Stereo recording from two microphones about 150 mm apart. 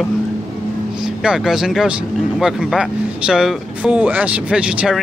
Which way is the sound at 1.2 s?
5° right (ahead or behind).